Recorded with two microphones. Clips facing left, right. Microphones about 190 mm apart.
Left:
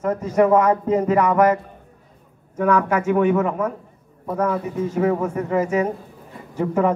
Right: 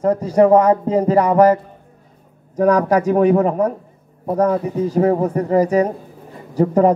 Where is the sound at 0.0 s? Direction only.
35° right (ahead or behind).